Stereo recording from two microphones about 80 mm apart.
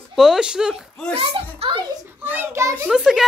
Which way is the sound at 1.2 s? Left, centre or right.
Right.